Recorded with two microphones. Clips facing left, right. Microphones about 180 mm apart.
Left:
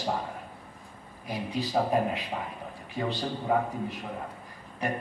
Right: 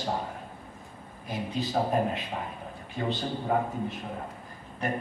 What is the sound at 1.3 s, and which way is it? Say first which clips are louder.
Speech: even; 25° right (ahead or behind).